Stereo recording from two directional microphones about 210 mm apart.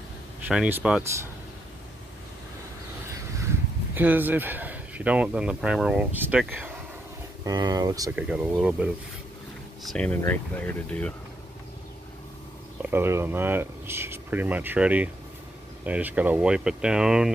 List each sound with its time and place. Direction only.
0.5 s speech: 5° right (ahead or behind)
3.9 s speech: 10° right (ahead or behind)
8.2 s speech: 5° right (ahead or behind)
9.8 s speech: 5° left (ahead or behind)
12.9 s speech: 10° right (ahead or behind)